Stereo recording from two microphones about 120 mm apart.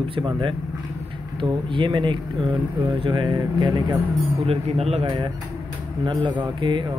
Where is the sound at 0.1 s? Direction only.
45° right (ahead or behind).